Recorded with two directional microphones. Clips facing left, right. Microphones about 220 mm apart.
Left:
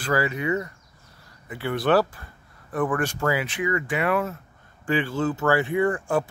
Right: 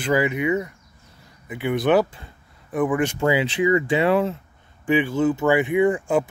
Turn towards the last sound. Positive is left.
turn(degrees=-15)  # may be behind; listen again after turning